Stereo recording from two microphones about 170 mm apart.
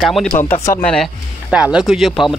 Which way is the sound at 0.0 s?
Centre (ahead or behind).